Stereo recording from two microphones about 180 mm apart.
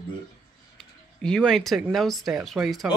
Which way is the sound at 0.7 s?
5° left (ahead or behind).